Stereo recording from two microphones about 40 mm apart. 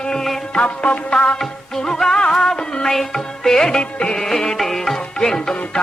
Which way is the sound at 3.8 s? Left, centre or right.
Left.